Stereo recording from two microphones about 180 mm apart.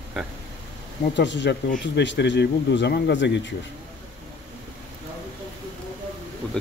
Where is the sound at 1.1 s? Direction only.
80° left.